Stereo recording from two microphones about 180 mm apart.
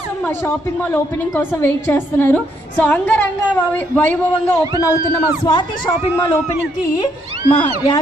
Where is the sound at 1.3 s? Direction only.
10° left (ahead or behind).